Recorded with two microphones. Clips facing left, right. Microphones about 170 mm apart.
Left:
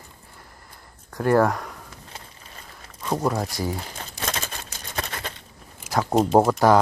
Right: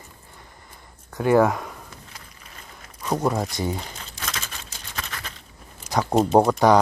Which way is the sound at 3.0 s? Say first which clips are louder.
Right 1 dB; centre (ahead or behind).